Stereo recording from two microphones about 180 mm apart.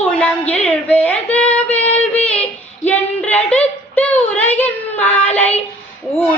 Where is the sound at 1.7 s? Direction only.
35° left (ahead or behind).